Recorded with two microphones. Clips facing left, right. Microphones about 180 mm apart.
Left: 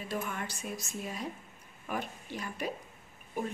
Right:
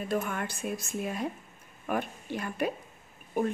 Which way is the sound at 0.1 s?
55° right (ahead or behind).